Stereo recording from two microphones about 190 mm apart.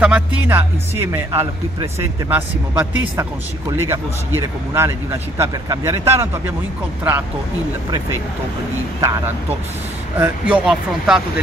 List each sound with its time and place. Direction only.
0.0 s speech: 10° right (ahead or behind)
9.0 s speech: 15° right (ahead or behind)